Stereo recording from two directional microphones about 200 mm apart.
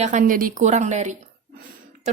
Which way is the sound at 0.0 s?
40° right (ahead or behind).